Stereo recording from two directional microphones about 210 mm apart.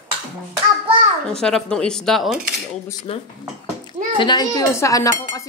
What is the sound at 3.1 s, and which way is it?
Speech, 25° left (ahead or behind).